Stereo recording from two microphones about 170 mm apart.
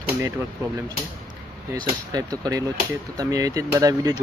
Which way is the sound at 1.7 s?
25° right (ahead or behind).